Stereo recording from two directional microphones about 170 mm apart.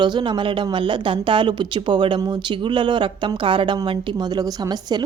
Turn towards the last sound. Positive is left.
turn(degrees=-25)  # may be behind; listen again after turning